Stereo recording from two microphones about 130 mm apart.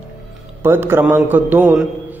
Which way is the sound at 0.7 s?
15° right (ahead or behind).